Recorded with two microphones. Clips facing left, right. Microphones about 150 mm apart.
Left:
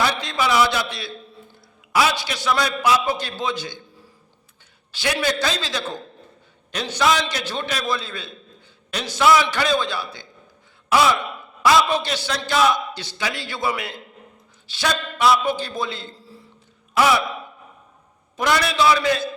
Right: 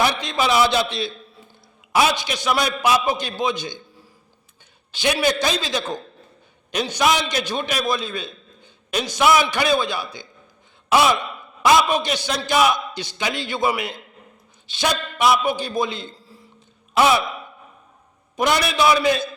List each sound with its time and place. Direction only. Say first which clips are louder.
0.0 s a man's voice: right 1 dB; 20° right (ahead or behind)
4.9 s a man's voice: right 3 dB; 20° right (ahead or behind)
18.3 s a man's voice: right 1 dB; 20° right (ahead or behind)